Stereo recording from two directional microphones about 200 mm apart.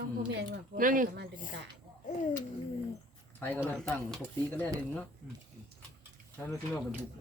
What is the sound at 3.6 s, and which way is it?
Speech, 5° left (ahead or behind).